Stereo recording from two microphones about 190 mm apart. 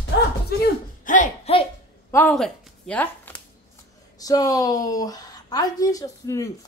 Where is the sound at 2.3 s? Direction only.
Centre (ahead or behind).